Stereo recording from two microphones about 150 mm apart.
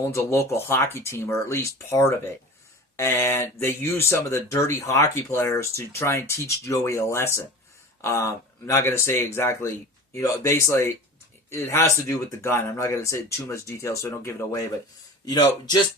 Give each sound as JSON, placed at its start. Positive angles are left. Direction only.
{"t": 0.0, "sound": "speech", "side_deg": 20}